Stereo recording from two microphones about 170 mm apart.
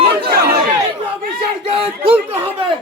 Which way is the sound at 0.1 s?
70° right (ahead or behind).